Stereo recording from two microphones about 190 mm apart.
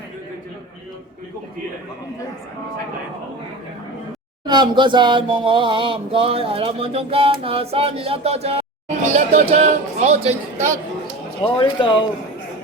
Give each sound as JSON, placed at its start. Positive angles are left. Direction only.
{"t": 4.4, "sound": "speech", "side_deg": -25}
{"t": 11.4, "sound": "speech", "side_deg": 25}